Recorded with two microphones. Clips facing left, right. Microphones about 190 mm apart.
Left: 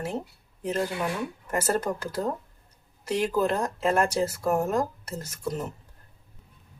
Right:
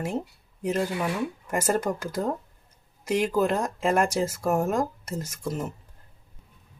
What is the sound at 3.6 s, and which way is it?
Speech, 10° right (ahead or behind).